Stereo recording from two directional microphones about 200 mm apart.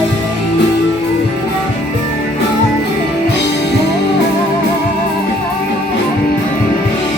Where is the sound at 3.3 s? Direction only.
60° left (ahead or behind).